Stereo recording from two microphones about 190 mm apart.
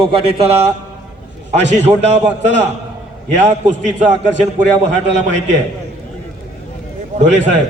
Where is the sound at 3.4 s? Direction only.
40° right (ahead or behind).